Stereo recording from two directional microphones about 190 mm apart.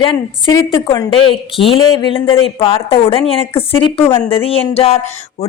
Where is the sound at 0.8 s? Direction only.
25° left (ahead or behind).